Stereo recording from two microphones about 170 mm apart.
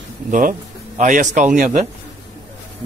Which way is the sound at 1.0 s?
45° right (ahead or behind).